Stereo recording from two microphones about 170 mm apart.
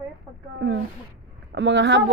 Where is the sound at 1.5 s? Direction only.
90° right.